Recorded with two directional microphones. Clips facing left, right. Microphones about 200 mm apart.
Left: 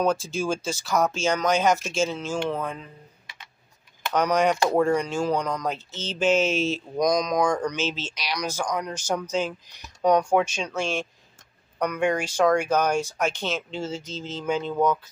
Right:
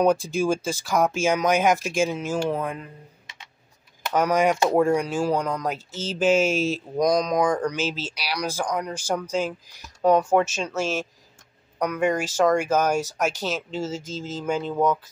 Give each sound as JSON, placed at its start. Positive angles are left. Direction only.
{"t": 0.0, "sound": "speech", "side_deg": -15}
{"t": 4.1, "sound": "speech", "side_deg": -5}